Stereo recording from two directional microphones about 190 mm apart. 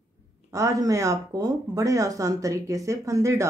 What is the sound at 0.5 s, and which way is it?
Speech, 15° right (ahead or behind).